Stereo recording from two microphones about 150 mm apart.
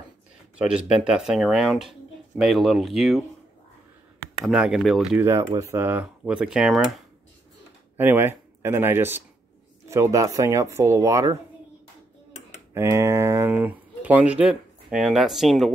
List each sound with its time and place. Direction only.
0.6 s speech: 5° right (ahead or behind)
4.5 s speech: 5° right (ahead or behind)
5.2 s speech: 20° right (ahead or behind); by 7.0 s centre (ahead or behind)
8.0 s speech: 15° right (ahead or behind)
12.7 s speech: 15° right (ahead or behind); by 15.7 s centre (ahead or behind)